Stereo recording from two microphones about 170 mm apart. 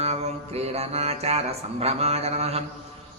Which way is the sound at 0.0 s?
40° right (ahead or behind).